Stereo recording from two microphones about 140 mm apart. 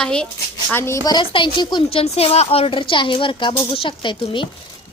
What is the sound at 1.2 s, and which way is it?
A woman's voice, 35° left (ahead or behind).